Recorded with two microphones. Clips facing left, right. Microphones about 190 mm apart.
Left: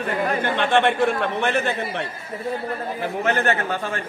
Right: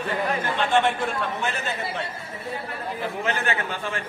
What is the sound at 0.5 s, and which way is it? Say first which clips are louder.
A man's voice: left 4 dB; 60° left (ahead or behind).